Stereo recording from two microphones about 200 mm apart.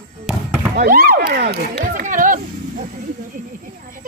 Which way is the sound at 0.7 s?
45° right (ahead or behind).